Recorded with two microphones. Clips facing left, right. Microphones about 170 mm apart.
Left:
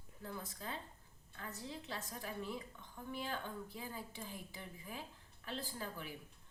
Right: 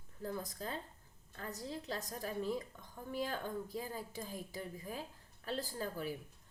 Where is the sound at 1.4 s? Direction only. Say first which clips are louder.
Right 4 dB; 40° right (ahead or behind).